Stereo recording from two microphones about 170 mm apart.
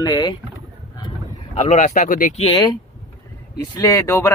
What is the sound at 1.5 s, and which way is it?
Speech, 45° left (ahead or behind).